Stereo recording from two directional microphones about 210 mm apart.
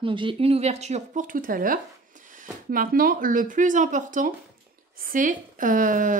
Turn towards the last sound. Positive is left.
turn(degrees=-40)  # may be behind; listen again after turning